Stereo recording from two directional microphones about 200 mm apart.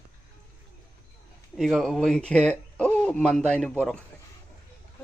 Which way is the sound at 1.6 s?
Centre (ahead or behind).